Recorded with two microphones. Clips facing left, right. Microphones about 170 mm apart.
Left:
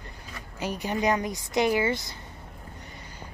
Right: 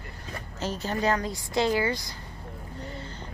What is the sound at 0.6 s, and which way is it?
A woman's voice, 15° left (ahead or behind).